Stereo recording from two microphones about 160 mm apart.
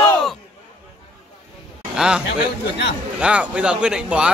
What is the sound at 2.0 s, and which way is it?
A man's voice, 5° right (ahead or behind).